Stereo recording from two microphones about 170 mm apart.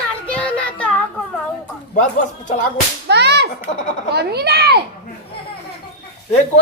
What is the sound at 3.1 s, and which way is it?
Whip, 80° right.